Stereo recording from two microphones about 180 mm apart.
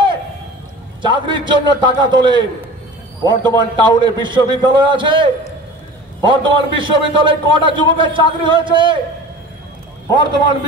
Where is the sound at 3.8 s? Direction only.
25° right (ahead or behind).